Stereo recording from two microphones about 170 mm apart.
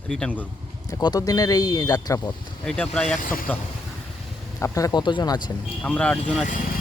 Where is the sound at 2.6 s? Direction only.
5° left (ahead or behind).